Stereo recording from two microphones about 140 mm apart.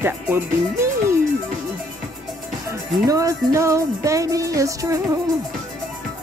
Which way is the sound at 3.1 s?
25° right (ahead or behind).